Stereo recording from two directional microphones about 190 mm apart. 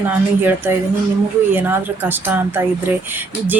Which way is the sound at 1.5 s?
10° right (ahead or behind).